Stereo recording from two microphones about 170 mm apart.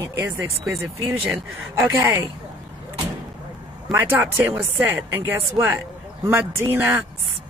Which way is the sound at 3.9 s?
15° right (ahead or behind).